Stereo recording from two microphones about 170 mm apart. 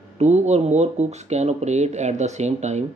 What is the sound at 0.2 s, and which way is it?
Speech, 40° right (ahead or behind).